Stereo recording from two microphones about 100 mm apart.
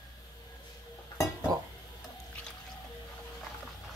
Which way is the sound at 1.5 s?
35° right (ahead or behind).